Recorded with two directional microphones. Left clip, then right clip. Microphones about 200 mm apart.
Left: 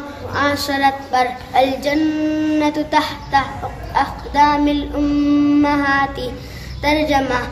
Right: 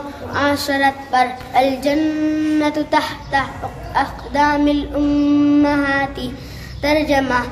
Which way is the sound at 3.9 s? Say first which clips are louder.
Left 1 dB; 5° right (ahead or behind).